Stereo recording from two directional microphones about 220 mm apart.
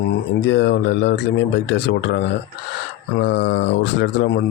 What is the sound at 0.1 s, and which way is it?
Speech, 55° left (ahead or behind).